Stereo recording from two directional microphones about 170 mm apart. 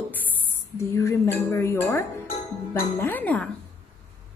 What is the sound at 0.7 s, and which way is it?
A woman's voice, 15° left (ahead or behind).